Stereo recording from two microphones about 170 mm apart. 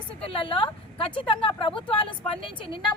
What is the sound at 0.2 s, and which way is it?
Speech, 35° left (ahead or behind).